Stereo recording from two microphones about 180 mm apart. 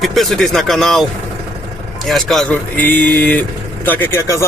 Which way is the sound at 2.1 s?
Centre (ahead or behind).